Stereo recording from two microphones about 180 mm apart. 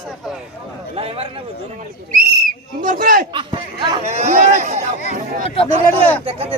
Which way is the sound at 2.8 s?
50° right (ahead or behind).